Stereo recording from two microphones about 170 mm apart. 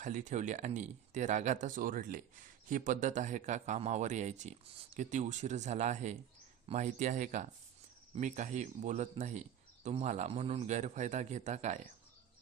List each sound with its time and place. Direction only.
0.0 s speech: 45° right (ahead or behind)